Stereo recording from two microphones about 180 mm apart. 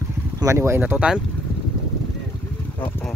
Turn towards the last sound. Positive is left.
turn(degrees=-5)  # may be behind; listen again after turning